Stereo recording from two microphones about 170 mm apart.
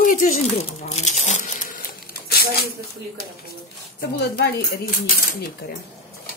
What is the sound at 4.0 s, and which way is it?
Speech, 65° left (ahead or behind).